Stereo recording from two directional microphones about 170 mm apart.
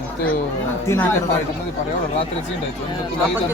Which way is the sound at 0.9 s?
15° left (ahead or behind).